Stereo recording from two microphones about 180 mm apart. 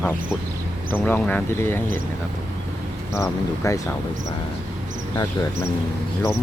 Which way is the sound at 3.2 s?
20° left (ahead or behind).